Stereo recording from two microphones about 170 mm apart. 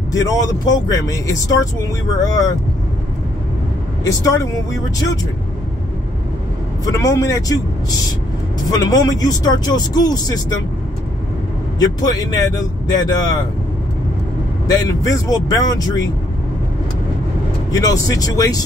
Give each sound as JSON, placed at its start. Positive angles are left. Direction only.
{"t": 0.1, "sound": "speech", "side_deg": 20}
{"t": 4.0, "sound": "speech", "side_deg": 20}
{"t": 6.8, "sound": "speech", "side_deg": 20}
{"t": 11.8, "sound": "speech", "side_deg": 20}
{"t": 14.7, "sound": "speech", "side_deg": 20}
{"t": 17.6, "sound": "speech", "side_deg": 20}